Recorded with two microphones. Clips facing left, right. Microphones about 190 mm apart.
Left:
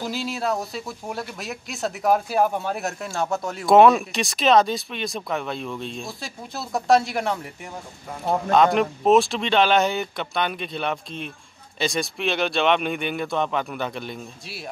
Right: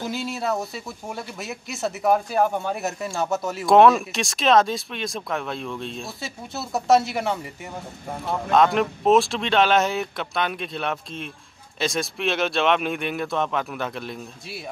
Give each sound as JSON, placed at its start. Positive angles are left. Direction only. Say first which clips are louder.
{"t": 0.0, "sound": "speech", "louder": "left 1 dB", "side_deg": 0}
{"t": 8.5, "sound": "speech", "louder": "even", "side_deg": 0}